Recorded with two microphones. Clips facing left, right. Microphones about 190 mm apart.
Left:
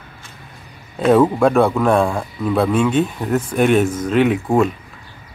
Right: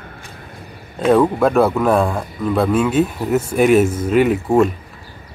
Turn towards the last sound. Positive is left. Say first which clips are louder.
# right 1 dB
turn(degrees=0)  # may be behind; listen again after turning